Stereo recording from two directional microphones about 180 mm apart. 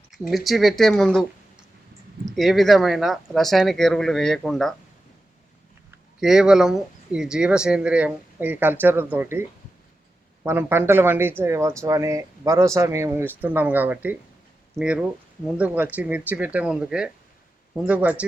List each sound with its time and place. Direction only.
0.3 s speech: centre (ahead or behind)
6.1 s speech: 5° right (ahead or behind)